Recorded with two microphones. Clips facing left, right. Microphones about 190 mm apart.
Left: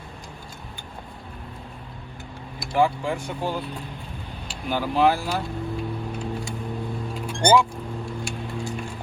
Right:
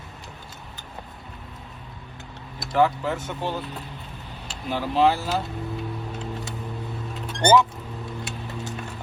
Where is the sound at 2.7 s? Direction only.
10° left (ahead or behind).